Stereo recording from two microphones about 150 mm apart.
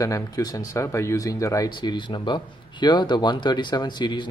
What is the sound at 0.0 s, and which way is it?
Speech, 25° left (ahead or behind).